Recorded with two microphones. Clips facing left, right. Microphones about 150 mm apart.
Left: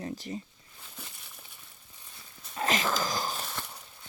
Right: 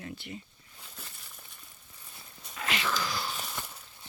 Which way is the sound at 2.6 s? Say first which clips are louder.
Left 4 dB; 40° left (ahead or behind).